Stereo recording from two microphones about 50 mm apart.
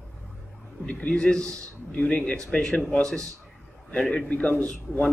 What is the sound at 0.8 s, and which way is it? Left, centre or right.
A man's voice, centre.